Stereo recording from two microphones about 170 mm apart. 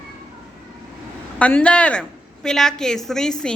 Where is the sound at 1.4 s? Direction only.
5° left (ahead or behind).